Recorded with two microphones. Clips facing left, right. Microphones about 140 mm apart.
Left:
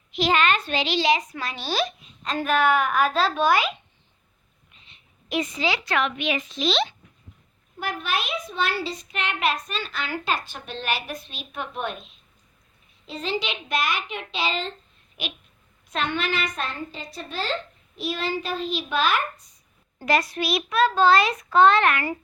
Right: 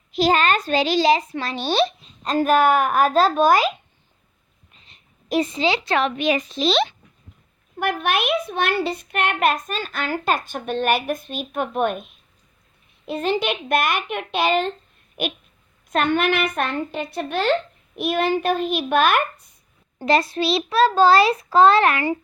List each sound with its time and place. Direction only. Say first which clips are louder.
0.1 s a child's voice: right 3 dB; 40° right (ahead or behind)
4.7 s a sound: right 2 dB; 40° right (ahead or behind)
5.5 s a child's voice: right 5 dB; 25° right (ahead or behind)
7.8 s a child's voice: right 6 dB; 60° right (ahead or behind)
20.1 s a child's voice: right 4 dB; 30° right (ahead or behind)